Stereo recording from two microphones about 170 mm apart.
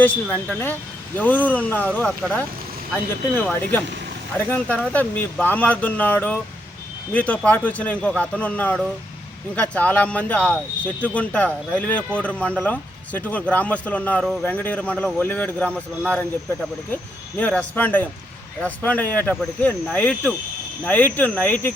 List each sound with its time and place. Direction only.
0.0 s speech: 10° left (ahead or behind)